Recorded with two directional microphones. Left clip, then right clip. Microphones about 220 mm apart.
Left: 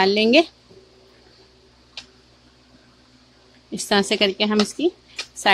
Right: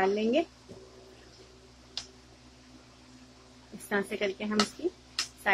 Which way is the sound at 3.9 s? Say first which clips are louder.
Left 12 dB; 60° left (ahead or behind).